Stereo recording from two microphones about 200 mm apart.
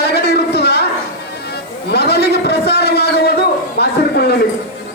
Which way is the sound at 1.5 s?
55° left (ahead or behind).